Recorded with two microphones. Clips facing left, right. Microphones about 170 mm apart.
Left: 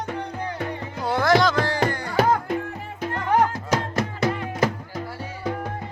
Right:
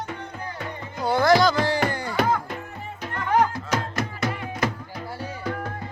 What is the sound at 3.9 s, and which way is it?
Music, 35° left (ahead or behind).